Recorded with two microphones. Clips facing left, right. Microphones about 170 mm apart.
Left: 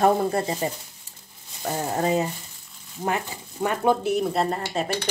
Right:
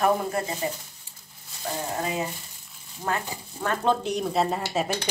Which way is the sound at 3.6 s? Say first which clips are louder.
Left 3 dB; 10° left (ahead or behind).